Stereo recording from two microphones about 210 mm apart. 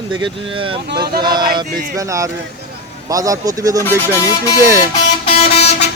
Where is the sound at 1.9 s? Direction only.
15° right (ahead or behind).